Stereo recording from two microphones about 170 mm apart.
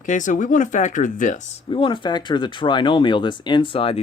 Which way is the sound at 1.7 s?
30° left (ahead or behind).